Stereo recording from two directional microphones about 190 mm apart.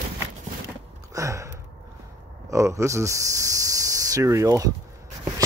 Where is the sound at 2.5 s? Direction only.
15° right (ahead or behind).